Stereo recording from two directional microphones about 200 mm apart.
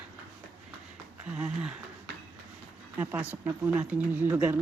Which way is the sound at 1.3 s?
5° right (ahead or behind).